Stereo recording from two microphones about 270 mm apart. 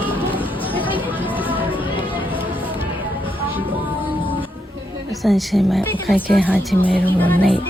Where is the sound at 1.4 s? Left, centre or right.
Centre.